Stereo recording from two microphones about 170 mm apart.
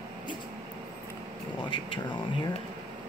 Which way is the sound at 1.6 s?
25° left (ahead or behind).